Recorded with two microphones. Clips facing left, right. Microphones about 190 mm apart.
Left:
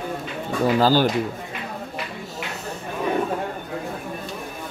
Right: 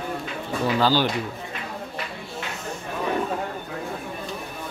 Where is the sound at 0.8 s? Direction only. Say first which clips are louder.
Left 3 dB; 45° left (ahead or behind).